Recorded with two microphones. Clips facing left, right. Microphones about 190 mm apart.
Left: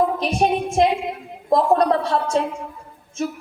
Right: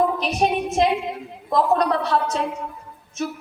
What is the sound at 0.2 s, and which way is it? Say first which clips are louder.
A woman's voice: left 2 dB; 30° left (ahead or behind).